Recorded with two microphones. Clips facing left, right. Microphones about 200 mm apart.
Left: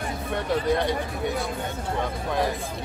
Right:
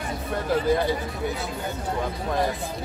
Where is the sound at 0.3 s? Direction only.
5° right (ahead or behind).